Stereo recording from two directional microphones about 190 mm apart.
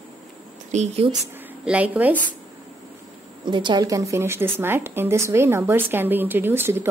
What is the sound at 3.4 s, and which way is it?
A woman's voice, 25° right (ahead or behind).